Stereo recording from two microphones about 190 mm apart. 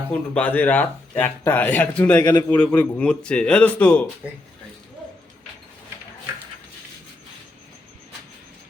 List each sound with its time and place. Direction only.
0.1 s speech: 10° left (ahead or behind)
2.2 s a man's voice: 20° left (ahead or behind)
2.6 s speech: 5° left (ahead or behind)
4.2 s speech: 5° right (ahead or behind)